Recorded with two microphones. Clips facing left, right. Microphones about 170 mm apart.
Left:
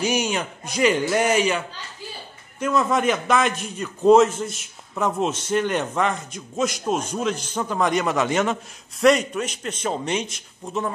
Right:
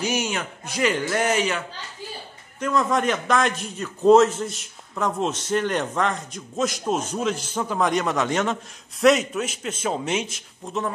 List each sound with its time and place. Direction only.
0.0 s speech: 20° left (ahead or behind)
2.6 s a man's voice: 5° left (ahead or behind)